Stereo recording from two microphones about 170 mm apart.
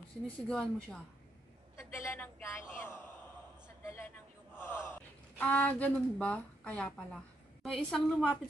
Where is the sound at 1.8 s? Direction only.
15° left (ahead or behind).